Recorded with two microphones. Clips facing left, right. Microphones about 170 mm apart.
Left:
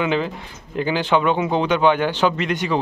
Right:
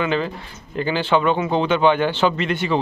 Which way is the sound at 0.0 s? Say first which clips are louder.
Left 1 dB; 15° left (ahead or behind).